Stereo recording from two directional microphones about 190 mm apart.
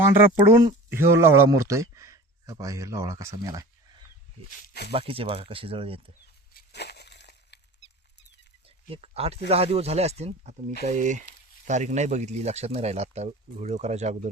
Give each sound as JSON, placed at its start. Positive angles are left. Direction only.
{"t": 0.3, "sound": "speech", "side_deg": -15}
{"t": 4.4, "sound": "speech", "side_deg": 55}
{"t": 4.9, "sound": "speech", "side_deg": -30}
{"t": 6.5, "sound": "a sound", "side_deg": 60}
{"t": 8.9, "sound": "speech", "side_deg": -30}